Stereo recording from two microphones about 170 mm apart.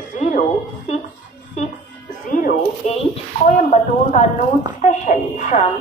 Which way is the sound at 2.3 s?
50° left (ahead or behind).